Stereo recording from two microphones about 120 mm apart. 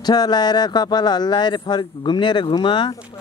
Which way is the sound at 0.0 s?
35° left (ahead or behind).